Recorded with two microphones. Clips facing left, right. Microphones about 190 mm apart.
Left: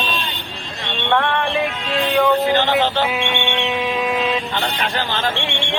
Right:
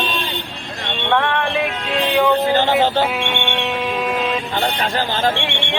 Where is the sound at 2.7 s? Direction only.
45° right (ahead or behind).